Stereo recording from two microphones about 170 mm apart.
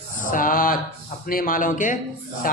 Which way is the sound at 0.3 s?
55° left (ahead or behind).